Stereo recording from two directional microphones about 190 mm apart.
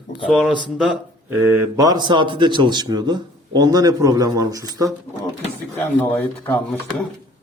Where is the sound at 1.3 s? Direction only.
15° right (ahead or behind).